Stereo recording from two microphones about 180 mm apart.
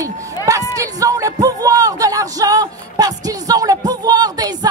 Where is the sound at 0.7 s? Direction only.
20° right (ahead or behind).